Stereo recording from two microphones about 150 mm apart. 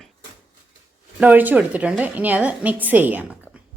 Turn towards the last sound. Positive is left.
turn(degrees=-10)  # may be behind; listen again after turning